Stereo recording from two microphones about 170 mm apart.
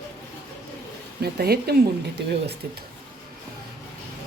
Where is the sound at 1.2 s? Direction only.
70° right (ahead or behind).